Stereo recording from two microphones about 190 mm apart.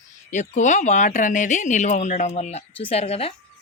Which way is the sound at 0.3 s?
40° left (ahead or behind).